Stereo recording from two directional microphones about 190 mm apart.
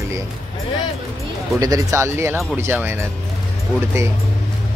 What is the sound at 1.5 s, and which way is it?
Speech, 20° right (ahead or behind).